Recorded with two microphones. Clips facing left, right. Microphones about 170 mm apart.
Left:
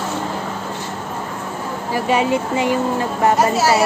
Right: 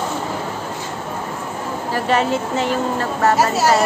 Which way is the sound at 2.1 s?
10° left (ahead or behind).